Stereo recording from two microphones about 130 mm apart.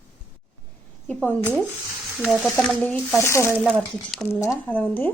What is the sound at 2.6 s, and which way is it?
Speech, 10° left (ahead or behind).